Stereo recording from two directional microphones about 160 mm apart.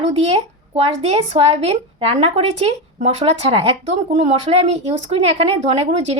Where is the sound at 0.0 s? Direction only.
40° right (ahead or behind).